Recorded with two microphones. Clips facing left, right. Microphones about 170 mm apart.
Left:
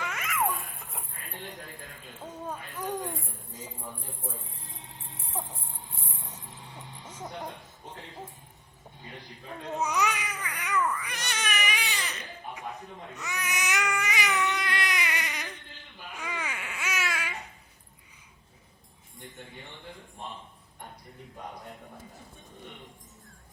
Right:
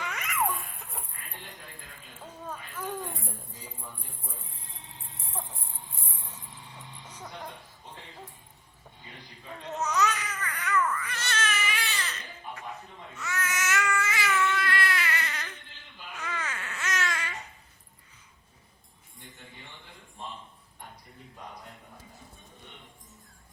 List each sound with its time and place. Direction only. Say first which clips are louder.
0.0 s music: left 1 dB; centre (ahead or behind)
2.5 s a sound: left 2 dB; 15° left (ahead or behind)
7.0 s music: left 5 dB; 25° left (ahead or behind)
9.6 s baby cry: even; 10° left (ahead or behind)
13.1 s baby cry: right 2 dB; 15° left (ahead or behind)